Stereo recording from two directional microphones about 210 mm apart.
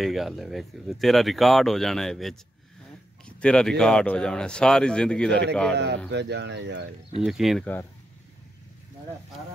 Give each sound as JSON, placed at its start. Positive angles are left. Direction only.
{"t": 0.0, "sound": "speech", "side_deg": 0}
{"t": 5.8, "sound": "speech", "side_deg": -55}
{"t": 7.2, "sound": "speech", "side_deg": 0}